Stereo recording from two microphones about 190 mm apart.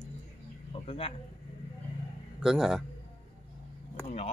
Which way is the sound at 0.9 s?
30° left (ahead or behind).